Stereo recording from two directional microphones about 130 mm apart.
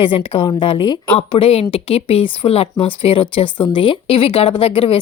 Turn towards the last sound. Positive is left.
turn(degrees=45)  # may be behind; listen again after turning